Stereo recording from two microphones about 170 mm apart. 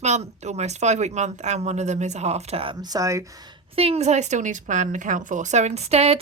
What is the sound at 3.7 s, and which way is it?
A woman's voice, 35° right (ahead or behind).